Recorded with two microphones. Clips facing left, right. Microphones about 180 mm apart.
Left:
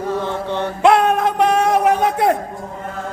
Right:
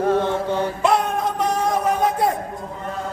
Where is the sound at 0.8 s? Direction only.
70° left (ahead or behind).